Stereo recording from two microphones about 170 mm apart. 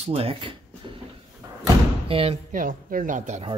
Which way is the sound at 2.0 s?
35° right (ahead or behind).